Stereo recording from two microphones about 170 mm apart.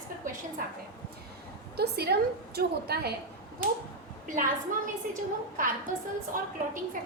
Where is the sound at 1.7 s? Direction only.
70° right (ahead or behind).